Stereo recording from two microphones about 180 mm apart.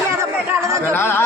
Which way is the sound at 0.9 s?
15° left (ahead or behind).